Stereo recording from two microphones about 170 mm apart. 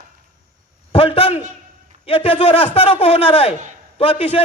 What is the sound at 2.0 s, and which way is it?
A man's voice, 35° left (ahead or behind).